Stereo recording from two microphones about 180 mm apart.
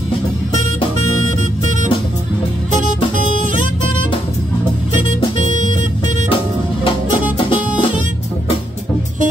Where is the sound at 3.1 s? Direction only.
45° right (ahead or behind).